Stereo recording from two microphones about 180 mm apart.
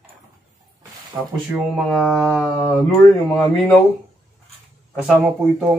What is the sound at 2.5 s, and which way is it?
Speech, 20° left (ahead or behind).